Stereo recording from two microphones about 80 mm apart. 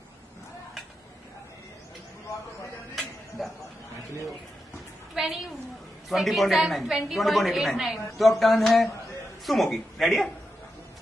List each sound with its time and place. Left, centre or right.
3.0 s music: centre
5.1 s a woman's voice: centre